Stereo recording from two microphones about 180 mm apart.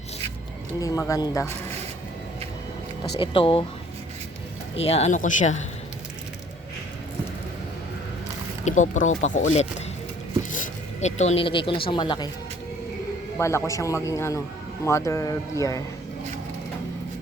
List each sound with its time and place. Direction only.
0.8 s a man's voice: 15° left (ahead or behind)
3.2 s speech: 30° left (ahead or behind)
4.8 s speech: 35° left (ahead or behind)
8.6 s speech: 45° left (ahead or behind); by 12.3 s 25° left (ahead or behind)
13.4 s a man's voice: 15° left (ahead or behind)